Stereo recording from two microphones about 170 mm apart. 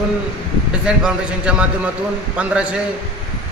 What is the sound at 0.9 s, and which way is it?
Speech, 5° right (ahead or behind).